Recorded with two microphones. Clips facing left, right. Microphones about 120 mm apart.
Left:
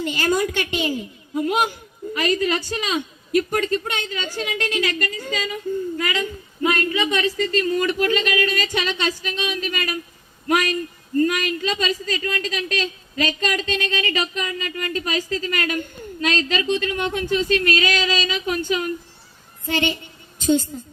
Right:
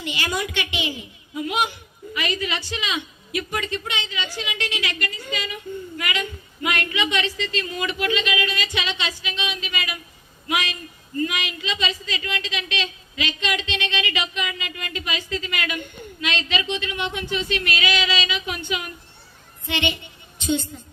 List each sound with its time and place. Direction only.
0.0 s a woman's voice: 45° left (ahead or behind)